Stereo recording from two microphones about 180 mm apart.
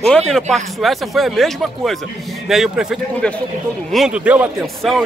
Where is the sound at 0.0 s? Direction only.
5° left (ahead or behind).